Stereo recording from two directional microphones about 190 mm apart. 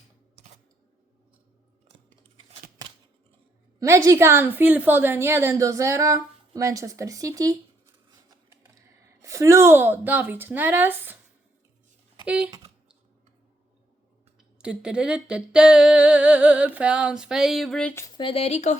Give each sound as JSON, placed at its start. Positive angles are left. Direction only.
{"t": 3.8, "sound": "a woman's voice", "side_deg": -15}
{"t": 9.2, "sound": "a woman's voice", "side_deg": -15}
{"t": 12.2, "sound": "speech", "side_deg": -5}
{"t": 14.6, "sound": "a sound", "side_deg": -5}
{"t": 18.2, "sound": "speech", "side_deg": 30}